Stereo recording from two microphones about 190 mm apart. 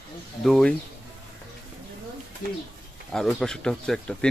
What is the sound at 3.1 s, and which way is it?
A man's voice, centre (ahead or behind).